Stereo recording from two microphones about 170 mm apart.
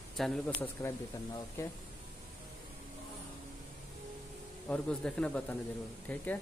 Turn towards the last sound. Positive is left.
turn(degrees=10)  # may be behind; listen again after turning